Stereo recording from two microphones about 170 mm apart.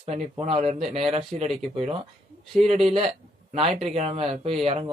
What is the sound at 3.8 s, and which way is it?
Speech, 40° right (ahead or behind).